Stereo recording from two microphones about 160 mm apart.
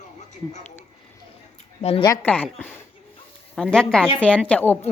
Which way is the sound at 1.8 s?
35° left (ahead or behind).